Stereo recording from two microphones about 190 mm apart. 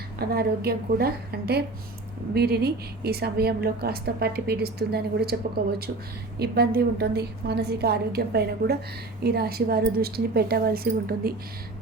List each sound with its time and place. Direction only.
0.2 s a woman's voice: 55° right (ahead or behind)
6.4 s a woman's voice: 55° right (ahead or behind)